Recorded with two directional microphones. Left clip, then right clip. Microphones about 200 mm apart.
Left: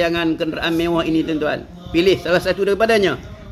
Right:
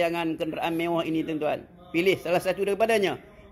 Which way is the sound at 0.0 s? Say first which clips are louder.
Left 8 dB; 15° right (ahead or behind).